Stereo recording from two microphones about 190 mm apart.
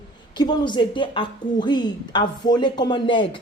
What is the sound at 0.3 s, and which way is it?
A woman's voice, 20° left (ahead or behind).